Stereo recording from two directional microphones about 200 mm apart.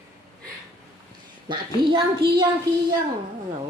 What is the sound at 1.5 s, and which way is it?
Speech, 25° right (ahead or behind).